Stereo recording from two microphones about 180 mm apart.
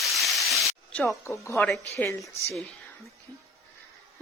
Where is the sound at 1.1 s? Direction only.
15° left (ahead or behind).